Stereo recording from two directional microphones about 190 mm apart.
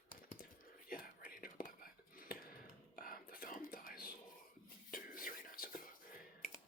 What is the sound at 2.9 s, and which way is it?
Whispering, 50° left (ahead or behind).